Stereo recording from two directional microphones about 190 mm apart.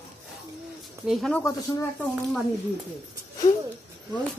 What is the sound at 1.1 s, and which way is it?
Speech, 5° left (ahead or behind).